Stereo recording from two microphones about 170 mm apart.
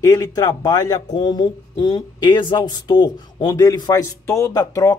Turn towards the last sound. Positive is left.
turn(degrees=20)  # may be behind; listen again after turning